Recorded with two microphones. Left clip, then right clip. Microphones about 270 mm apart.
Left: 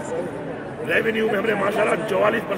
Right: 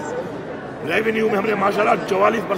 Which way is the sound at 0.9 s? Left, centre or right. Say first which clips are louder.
Right 1 dB; centre.